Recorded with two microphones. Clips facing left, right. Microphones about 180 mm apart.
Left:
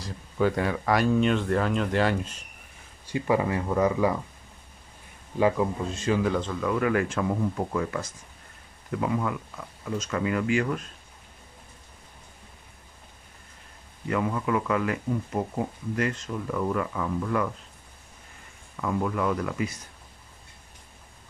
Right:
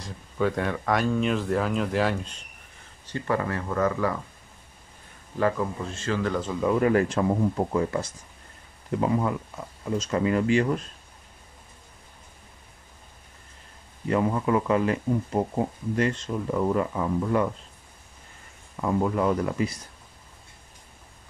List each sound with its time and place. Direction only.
0.0 s speech: centre (ahead or behind)
3.1 s speech: 10° left (ahead or behind)
5.4 s speech: 15° left (ahead or behind)
6.7 s speech: 35° right (ahead or behind)
14.0 s speech: 30° right (ahead or behind)
18.8 s speech: 30° right (ahead or behind)